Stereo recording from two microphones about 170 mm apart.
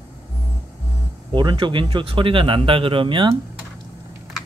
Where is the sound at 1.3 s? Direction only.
30° right (ahead or behind).